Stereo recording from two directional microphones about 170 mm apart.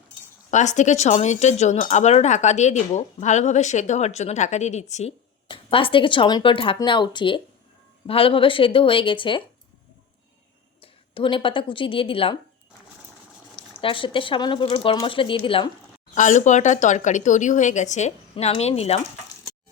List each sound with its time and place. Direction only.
0.5 s speech: 45° left (ahead or behind)
5.5 s speech: 30° left (ahead or behind)
10.8 s a woman's voice: 30° left (ahead or behind)
13.7 s speech: 30° left (ahead or behind)
16.1 s speech: 45° left (ahead or behind)